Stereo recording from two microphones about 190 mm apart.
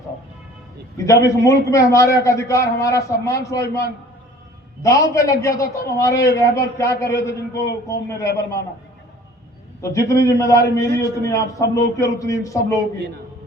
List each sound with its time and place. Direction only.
0.9 s a man's voice: 15° left (ahead or behind)
9.8 s a man's voice: 15° left (ahead or behind)